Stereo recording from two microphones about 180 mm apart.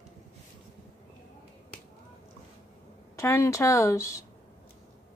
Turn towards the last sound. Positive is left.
turn(degrees=15)  # may be behind; listen again after turning